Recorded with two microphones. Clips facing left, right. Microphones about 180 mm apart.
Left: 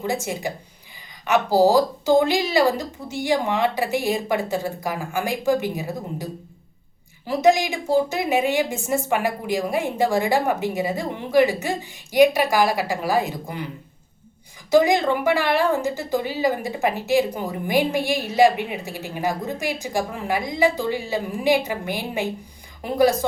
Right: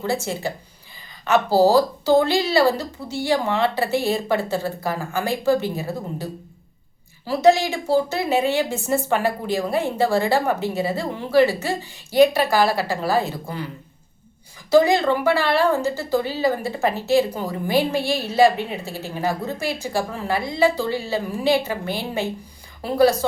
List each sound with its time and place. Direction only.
0.0 s a woman's voice: 15° left (ahead or behind)
14.7 s a woman's voice: 15° left (ahead or behind)